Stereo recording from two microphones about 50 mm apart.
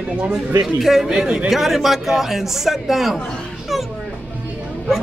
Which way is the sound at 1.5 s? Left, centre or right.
Centre.